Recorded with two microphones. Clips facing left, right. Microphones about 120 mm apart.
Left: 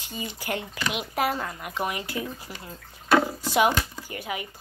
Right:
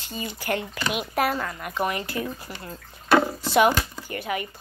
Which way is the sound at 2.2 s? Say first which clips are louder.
Right 2 dB; 60° right (ahead or behind).